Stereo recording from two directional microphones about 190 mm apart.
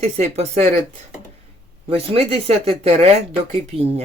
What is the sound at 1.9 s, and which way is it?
Speech, 30° right (ahead or behind).